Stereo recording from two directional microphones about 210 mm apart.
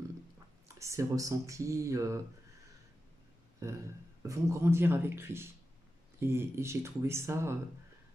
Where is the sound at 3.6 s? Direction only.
15° right (ahead or behind).